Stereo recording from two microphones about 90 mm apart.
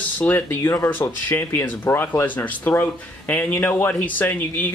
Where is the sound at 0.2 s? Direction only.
25° left (ahead or behind).